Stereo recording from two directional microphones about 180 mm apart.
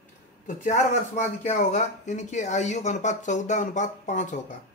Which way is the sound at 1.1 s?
40° left (ahead or behind).